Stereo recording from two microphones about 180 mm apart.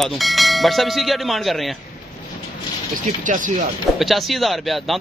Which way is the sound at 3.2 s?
45° right (ahead or behind).